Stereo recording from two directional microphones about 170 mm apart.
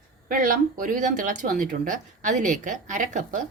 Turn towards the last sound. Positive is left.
turn(degrees=-45)  # may be behind; listen again after turning